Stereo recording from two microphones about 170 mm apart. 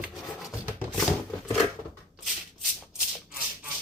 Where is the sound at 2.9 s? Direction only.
5° right (ahead or behind).